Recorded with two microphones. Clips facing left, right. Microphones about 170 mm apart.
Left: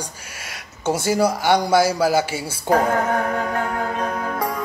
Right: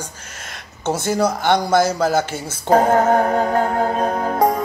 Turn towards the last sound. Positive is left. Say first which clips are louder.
# right 7 dB
turn(degrees=-35)  # may be behind; listen again after turning